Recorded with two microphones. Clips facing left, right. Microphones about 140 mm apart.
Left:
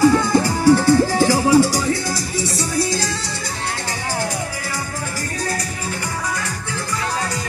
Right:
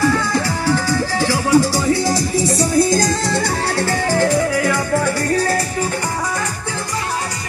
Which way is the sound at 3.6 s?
65° right (ahead or behind).